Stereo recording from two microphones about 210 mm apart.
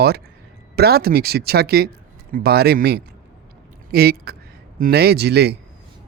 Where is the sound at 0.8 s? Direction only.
50° right (ahead or behind).